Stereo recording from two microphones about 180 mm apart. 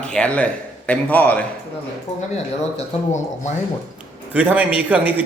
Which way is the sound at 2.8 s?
40° left (ahead or behind).